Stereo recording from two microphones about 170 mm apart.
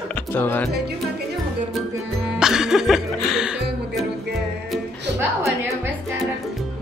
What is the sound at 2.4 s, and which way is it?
Music, 5° right (ahead or behind).